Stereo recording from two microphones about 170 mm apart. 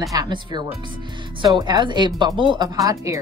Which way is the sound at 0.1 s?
25° right (ahead or behind).